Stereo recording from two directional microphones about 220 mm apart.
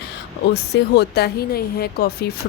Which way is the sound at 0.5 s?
50° left (ahead or behind).